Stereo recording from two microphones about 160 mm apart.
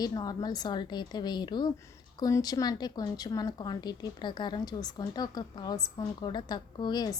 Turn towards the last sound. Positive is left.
turn(degrees=25)  # may be behind; listen again after turning